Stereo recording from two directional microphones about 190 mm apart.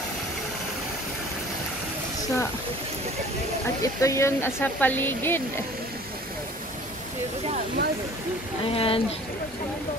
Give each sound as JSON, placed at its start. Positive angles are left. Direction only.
{"t": 3.8, "sound": "speech", "side_deg": 15}
{"t": 7.5, "sound": "speech", "side_deg": -55}
{"t": 8.7, "sound": "speech", "side_deg": 30}